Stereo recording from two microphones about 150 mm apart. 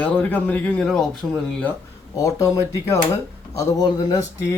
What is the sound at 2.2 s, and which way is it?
Speech, 20° left (ahead or behind).